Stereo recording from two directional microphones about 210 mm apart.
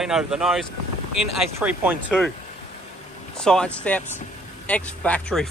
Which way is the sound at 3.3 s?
5° left (ahead or behind).